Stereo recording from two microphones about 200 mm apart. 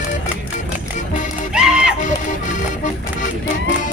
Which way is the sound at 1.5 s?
5° right (ahead or behind).